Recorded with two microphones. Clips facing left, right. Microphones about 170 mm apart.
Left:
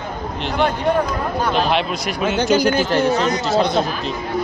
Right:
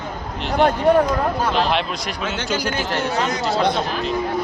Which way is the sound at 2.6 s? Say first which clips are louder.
Left 7 dB; 35° left (ahead or behind).